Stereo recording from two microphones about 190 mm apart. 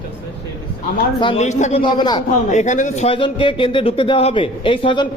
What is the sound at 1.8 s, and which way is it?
Speech, 25° left (ahead or behind).